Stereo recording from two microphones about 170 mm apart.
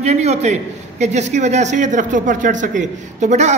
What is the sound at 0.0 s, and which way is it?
A man's voice, 40° right (ahead or behind).